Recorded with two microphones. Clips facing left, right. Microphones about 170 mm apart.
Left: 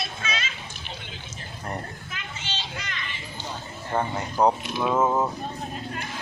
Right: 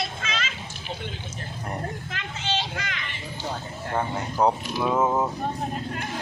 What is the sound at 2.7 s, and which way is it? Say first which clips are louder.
Speech: right 2 dB; 60° right (ahead or behind).